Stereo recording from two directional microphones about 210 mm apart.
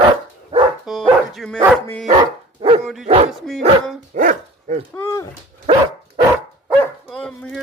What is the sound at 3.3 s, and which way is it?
Dog, centre (ahead or behind).